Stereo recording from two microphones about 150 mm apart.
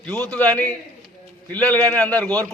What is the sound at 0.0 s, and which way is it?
A man's voice, 5° left (ahead or behind).